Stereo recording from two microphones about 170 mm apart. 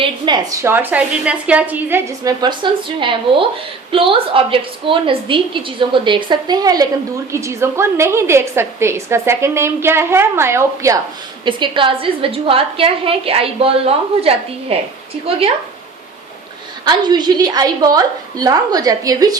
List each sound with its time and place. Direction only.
0.0 s a woman's voice: 20° right (ahead or behind)
11.4 s a woman's voice: 30° right (ahead or behind)
16.8 s a woman's voice: 25° right (ahead or behind)